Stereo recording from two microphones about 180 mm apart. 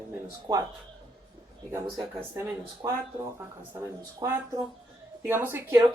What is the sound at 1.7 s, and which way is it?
Speech, 15° right (ahead or behind).